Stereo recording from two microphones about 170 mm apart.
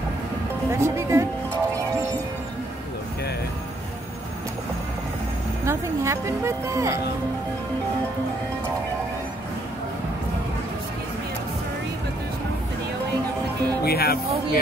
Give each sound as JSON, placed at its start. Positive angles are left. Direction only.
{"t": 0.7, "sound": "speech", "side_deg": -15}
{"t": 5.7, "sound": "speech", "side_deg": -15}
{"t": 13.8, "sound": "speech", "side_deg": 65}